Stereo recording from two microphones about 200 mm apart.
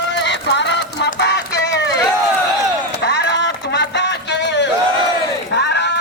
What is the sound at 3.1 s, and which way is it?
Music, 55° left (ahead or behind).